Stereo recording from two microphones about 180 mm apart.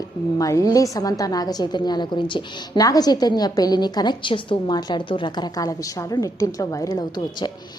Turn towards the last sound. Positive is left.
turn(degrees=20)  # may be behind; listen again after turning